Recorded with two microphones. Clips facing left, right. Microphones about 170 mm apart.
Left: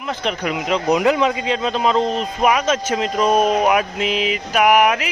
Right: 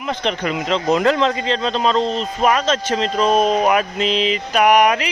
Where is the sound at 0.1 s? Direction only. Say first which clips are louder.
Right 1 dB; 5° left (ahead or behind).